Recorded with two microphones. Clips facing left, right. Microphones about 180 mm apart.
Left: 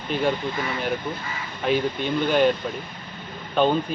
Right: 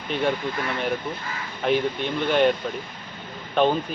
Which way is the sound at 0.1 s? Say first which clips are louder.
Left 1 dB; centre (ahead or behind).